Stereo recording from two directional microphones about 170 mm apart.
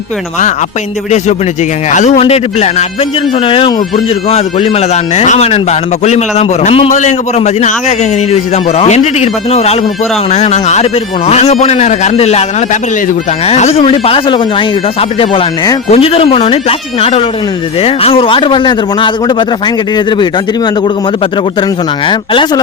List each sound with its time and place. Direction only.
1.9 s speech: 45° left (ahead or behind)
13.5 s speech: 40° left (ahead or behind)
22.0 s speech: 30° left (ahead or behind)